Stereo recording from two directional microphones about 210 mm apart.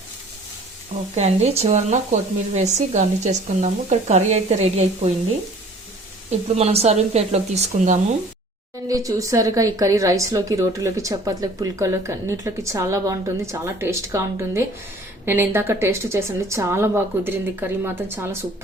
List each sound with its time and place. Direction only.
1.1 s speech: 30° right (ahead or behind)
6.6 s speech: 30° right (ahead or behind)
8.9 s a woman's voice: 15° right (ahead or behind)